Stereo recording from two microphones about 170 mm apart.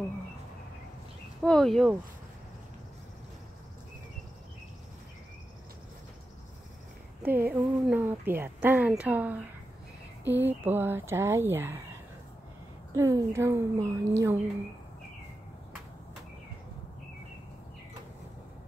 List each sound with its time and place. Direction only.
1.4 s speech: 5° left (ahead or behind)
7.2 s speech: 10° right (ahead or behind)